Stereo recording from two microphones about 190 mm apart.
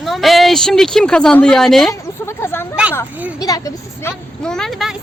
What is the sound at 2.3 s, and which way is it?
Speech, 10° left (ahead or behind).